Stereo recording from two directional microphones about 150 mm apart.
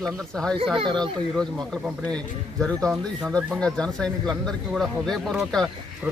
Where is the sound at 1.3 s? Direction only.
5° left (ahead or behind).